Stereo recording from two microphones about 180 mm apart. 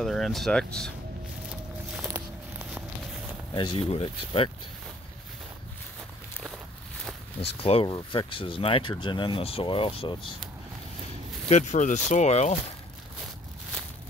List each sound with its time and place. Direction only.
0.0 s speech: centre (ahead or behind)
1.9 s a sound: 5° right (ahead or behind)
3.5 s speech: 30° left (ahead or behind)
7.6 s speech: 30° left (ahead or behind)
11.4 s speech: 40° left (ahead or behind)